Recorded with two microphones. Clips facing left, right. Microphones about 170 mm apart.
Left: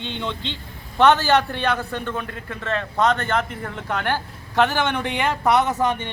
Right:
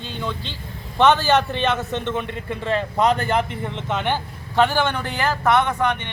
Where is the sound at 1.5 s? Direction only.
20° right (ahead or behind).